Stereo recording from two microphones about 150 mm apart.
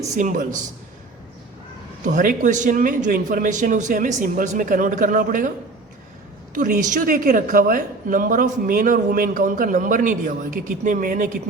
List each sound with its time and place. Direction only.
0.1 s a woman's voice: 60° right (ahead or behind)
2.1 s a woman's voice: 60° right (ahead or behind)
6.5 s a woman's voice: 60° right (ahead or behind)